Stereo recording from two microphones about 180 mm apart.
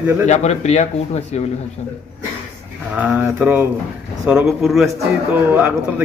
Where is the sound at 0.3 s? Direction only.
40° left (ahead or behind).